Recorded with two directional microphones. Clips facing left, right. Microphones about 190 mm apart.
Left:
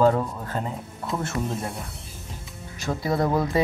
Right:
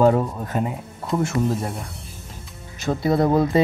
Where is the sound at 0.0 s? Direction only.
15° right (ahead or behind).